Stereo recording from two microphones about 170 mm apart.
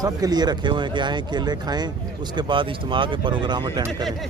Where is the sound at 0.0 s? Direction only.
25° right (ahead or behind).